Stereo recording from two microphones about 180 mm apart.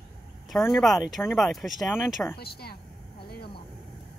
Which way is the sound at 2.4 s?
60° left (ahead or behind).